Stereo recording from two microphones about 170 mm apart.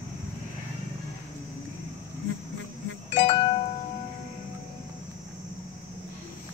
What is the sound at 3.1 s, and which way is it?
Music, 40° left (ahead or behind).